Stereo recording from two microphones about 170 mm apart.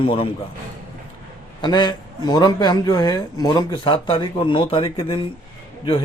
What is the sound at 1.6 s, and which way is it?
A man's voice, 25° left (ahead or behind).